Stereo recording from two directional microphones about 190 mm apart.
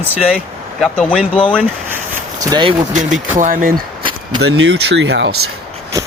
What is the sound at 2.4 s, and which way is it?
Speech, 20° right (ahead or behind).